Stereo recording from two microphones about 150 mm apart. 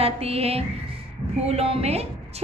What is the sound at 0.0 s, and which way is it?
A woman's voice, 40° right (ahead or behind).